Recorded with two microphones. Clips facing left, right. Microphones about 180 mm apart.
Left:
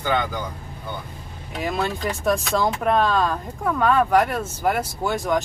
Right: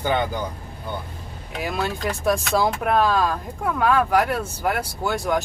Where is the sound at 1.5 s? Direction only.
5° right (ahead or behind).